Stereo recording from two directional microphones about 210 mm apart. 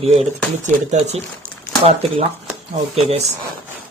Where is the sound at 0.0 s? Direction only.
30° right (ahead or behind).